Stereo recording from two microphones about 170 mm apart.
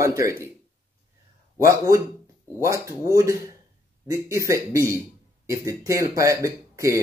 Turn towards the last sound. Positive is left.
turn(degrees=-20)  # may be behind; listen again after turning